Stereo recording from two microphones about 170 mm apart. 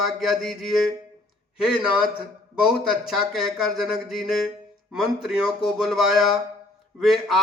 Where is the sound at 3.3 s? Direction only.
Centre (ahead or behind).